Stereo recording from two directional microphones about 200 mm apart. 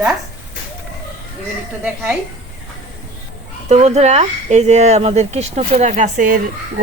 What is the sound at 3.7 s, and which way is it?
Speech, 35° right (ahead or behind).